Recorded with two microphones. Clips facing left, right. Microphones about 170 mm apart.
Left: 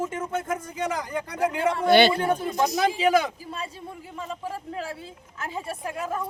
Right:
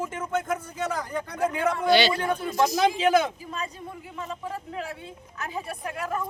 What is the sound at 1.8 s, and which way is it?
Speech, 55° left (ahead or behind).